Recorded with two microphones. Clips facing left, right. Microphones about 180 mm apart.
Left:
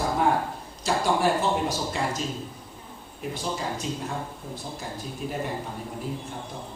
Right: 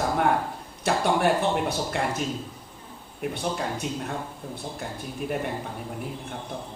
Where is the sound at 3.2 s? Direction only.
60° right (ahead or behind).